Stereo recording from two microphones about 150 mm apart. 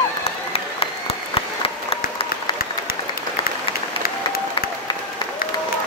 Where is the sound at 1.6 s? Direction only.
40° left (ahead or behind).